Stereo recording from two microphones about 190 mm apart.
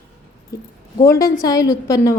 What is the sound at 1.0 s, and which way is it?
Speech, 15° left (ahead or behind).